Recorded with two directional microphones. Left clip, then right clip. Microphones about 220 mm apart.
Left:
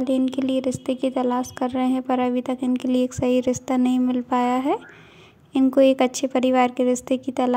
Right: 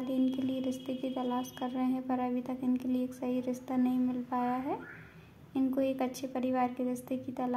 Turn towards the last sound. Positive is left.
turn(degrees=40)  # may be behind; listen again after turning